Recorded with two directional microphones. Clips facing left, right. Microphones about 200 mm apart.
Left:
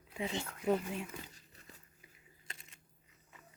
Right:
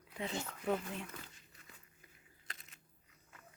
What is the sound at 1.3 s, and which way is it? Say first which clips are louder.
Crumpling: left 3 dB; 35° left (ahead or behind).